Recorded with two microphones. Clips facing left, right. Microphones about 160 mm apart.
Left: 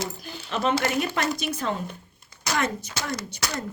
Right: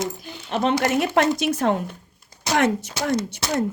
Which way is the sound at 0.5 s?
65° right (ahead or behind).